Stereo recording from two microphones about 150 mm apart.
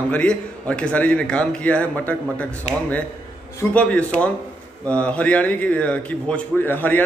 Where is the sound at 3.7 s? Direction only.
10° left (ahead or behind).